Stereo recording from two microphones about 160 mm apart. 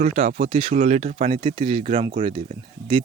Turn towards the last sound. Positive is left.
turn(degrees=-35)  # may be behind; listen again after turning